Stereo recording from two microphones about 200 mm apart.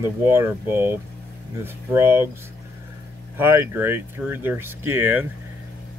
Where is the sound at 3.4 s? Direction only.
10° right (ahead or behind).